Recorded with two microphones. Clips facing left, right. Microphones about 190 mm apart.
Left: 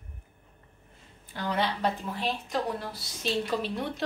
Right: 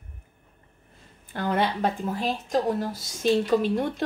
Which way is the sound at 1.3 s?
50° right (ahead or behind).